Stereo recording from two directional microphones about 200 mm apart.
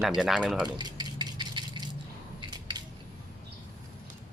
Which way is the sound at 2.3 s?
20° right (ahead or behind).